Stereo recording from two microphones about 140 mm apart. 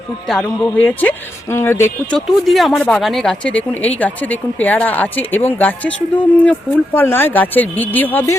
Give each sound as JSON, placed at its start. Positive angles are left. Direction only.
{"t": 0.3, "sound": "speech", "side_deg": 5}
{"t": 2.1, "sound": "speech", "side_deg": 0}